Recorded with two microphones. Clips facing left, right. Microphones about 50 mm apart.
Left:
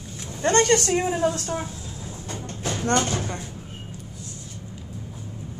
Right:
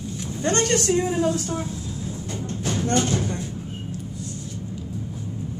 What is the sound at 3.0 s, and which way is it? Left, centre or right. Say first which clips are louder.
Speech: right 3 dB; left.